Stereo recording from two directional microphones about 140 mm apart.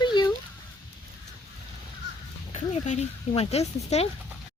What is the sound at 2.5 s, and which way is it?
Speech, 55° left (ahead or behind).